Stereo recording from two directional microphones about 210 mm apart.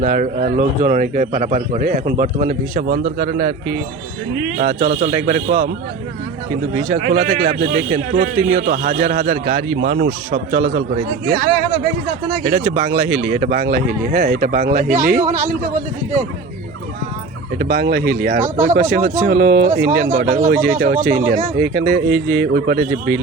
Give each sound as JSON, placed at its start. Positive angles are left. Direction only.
{"t": 0.0, "sound": "speech", "side_deg": -40}
{"t": 6.9, "sound": "speech", "side_deg": -40}
{"t": 12.4, "sound": "speech", "side_deg": -45}
{"t": 17.6, "sound": "speech", "side_deg": -50}
{"t": 19.6, "sound": "speech", "side_deg": -10}
{"t": 19.9, "sound": "speech", "side_deg": -45}
{"t": 21.6, "sound": "speech", "side_deg": -50}